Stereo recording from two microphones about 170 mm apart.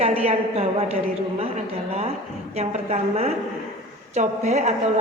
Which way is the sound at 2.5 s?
40° right (ahead or behind).